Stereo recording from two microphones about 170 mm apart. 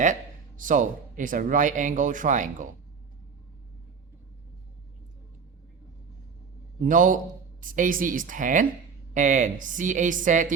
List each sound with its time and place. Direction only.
0.0 s speech: 50° right (ahead or behind)
6.8 s speech: 50° right (ahead or behind)